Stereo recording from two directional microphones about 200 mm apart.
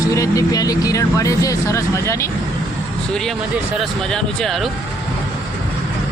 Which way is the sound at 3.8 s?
5° left (ahead or behind).